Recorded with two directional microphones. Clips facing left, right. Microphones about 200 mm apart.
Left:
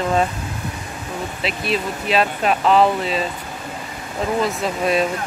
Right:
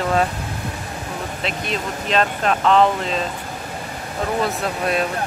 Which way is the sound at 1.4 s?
5° left (ahead or behind).